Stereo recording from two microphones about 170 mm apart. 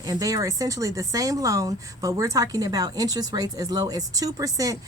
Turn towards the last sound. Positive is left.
turn(degrees=-20)  # may be behind; listen again after turning